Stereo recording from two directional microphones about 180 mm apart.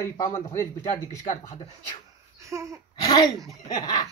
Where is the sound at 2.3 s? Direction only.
15° right (ahead or behind).